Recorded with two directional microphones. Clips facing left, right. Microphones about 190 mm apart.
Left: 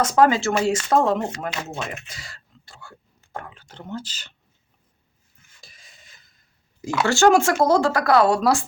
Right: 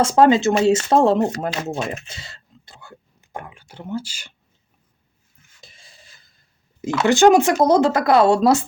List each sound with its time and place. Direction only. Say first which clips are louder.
0.0 s speech: right 4 dB; 25° right (ahead or behind); by 4.4 s 10° right (ahead or behind)
5.5 s filing: right 3 dB; 25° right (ahead or behind)
7.0 s speech: right 3 dB; 20° right (ahead or behind)